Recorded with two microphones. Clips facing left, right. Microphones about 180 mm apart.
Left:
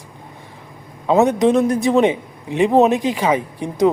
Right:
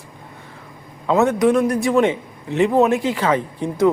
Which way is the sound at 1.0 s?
20° left (ahead or behind).